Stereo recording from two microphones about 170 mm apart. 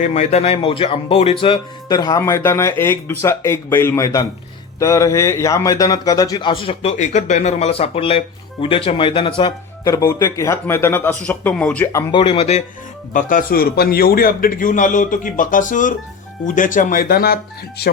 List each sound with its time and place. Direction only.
0.0 s speech: 45° left (ahead or behind)
6.9 s speech: 45° left (ahead or behind); by 12.0 s 15° left (ahead or behind)
12.1 s speech: 35° left (ahead or behind)
13.1 s a man's voice: 50° left (ahead or behind)